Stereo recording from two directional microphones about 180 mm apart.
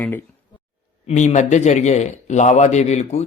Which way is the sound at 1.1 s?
40° left (ahead or behind).